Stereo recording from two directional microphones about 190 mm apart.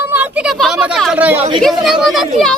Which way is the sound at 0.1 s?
10° right (ahead or behind).